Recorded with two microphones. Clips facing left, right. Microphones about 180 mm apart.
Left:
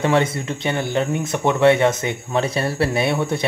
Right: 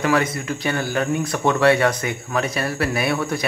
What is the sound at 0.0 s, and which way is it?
Speech, 25° left (ahead or behind).